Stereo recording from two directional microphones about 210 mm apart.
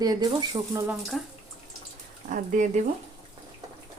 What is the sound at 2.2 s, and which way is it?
Speech, 40° right (ahead or behind).